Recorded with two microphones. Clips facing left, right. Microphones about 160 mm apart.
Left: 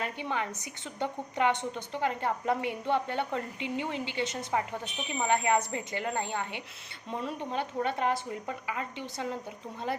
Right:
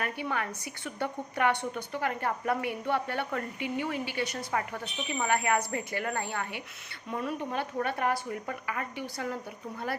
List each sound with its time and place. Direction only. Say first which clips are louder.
0.0 s a woman's voice: even; 20° left (ahead or behind)